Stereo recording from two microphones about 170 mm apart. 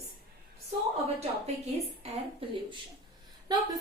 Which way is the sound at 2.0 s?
35° right (ahead or behind).